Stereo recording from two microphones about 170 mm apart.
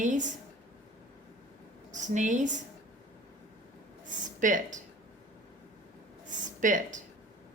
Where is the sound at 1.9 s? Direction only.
45° right (ahead or behind).